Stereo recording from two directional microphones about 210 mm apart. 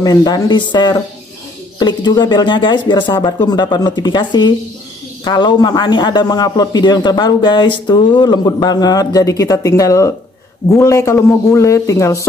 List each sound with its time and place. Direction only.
0.0 s a man's voice: 20° left (ahead or behind)